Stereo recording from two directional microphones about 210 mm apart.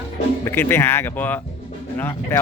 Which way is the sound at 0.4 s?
10° left (ahead or behind).